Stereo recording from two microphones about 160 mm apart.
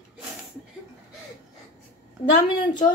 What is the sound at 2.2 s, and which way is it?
Speech, 35° left (ahead or behind).